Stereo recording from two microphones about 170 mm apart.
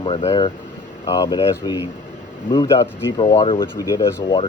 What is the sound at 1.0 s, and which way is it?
Speech, 25° left (ahead or behind).